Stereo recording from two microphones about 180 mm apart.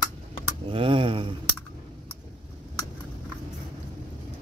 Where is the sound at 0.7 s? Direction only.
30° right (ahead or behind).